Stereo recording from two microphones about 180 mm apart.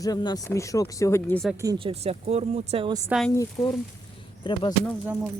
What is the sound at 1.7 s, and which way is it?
Speech, 30° right (ahead or behind).